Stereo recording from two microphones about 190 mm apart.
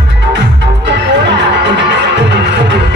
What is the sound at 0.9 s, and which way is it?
Music, 65° right (ahead or behind).